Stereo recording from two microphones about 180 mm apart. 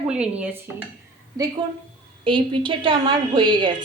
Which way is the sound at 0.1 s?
5° right (ahead or behind).